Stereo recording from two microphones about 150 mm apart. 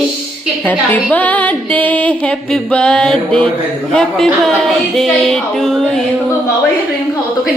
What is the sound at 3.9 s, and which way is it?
Speech, 5° left (ahead or behind).